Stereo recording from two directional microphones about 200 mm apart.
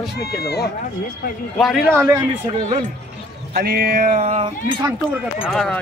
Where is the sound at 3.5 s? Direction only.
50° right (ahead or behind).